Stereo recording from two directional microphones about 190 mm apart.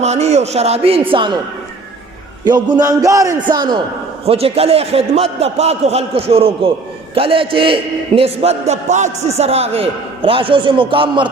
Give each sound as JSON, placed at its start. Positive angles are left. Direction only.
{"t": 0.0, "sound": "a man's voice", "side_deg": -35}
{"t": 2.4, "sound": "a man's voice", "side_deg": -20}